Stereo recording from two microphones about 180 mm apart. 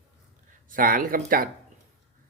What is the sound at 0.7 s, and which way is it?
Speech, 50° right (ahead or behind).